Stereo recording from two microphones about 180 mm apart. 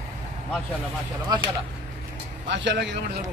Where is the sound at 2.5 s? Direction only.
80° right.